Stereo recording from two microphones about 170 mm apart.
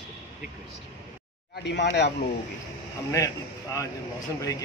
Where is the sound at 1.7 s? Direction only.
90° left.